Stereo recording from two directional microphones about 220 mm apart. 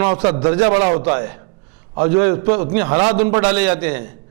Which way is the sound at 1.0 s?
15° right (ahead or behind).